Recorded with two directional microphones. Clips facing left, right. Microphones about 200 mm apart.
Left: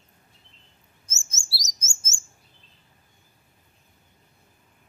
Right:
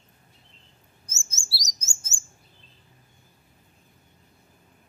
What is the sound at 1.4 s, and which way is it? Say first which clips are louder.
Chirp: right 1 dB; 70° left (ahead or behind).